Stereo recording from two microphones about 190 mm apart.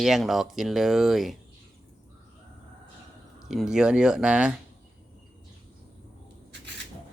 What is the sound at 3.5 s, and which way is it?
Speech, centre (ahead or behind).